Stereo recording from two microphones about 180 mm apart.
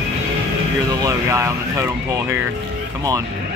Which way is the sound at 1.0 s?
15° right (ahead or behind).